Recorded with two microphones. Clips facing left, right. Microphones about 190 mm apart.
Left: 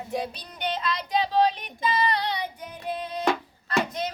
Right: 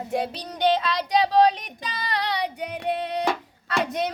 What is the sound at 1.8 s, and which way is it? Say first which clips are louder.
Child singing: left 9 dB; 90° right.